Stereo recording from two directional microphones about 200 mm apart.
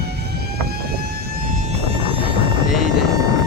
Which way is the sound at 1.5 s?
30° right (ahead or behind).